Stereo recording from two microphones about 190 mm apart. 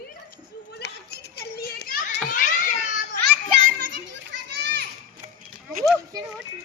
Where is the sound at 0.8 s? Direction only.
55° left (ahead or behind).